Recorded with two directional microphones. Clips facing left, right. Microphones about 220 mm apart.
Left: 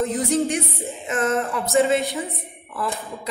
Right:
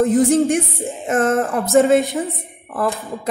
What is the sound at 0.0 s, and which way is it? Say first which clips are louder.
A woman's voice: right 7 dB; 50° right (ahead or behind).